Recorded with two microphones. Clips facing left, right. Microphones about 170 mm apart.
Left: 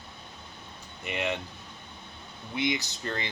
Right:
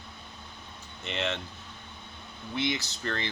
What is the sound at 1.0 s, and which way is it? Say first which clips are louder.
Speech: left 1 dB; 10° left (ahead or behind).